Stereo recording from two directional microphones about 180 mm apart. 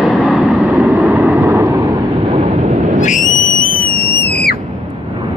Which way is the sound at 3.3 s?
45° left (ahead or behind).